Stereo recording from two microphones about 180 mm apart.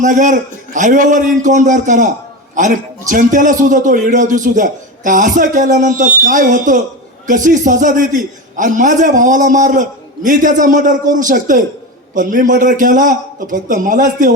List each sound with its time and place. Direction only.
0.0 s a man's voice: 45° right (ahead or behind)